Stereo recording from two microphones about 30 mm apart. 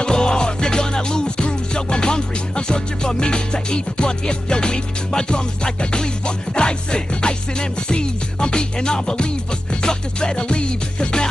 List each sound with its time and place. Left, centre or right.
0.0 s music: left